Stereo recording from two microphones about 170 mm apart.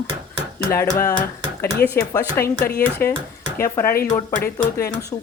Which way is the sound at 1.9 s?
15° left (ahead or behind).